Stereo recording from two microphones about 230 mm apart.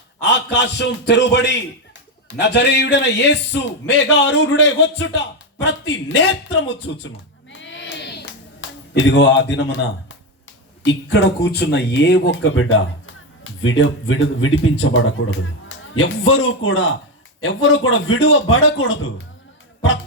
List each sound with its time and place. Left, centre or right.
0.2 s a man's voice: left
7.5 s hands: left
9.0 s a man's voice: left